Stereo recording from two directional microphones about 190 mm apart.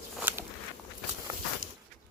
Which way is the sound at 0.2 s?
10° right (ahead or behind).